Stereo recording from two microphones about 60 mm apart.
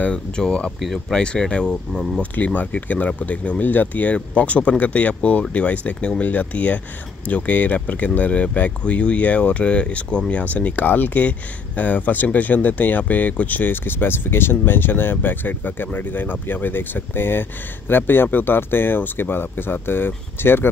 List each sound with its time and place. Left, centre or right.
0.0 s speech: centre
0.7 s speech: centre
1.1 s speech: centre
2.3 s speech: left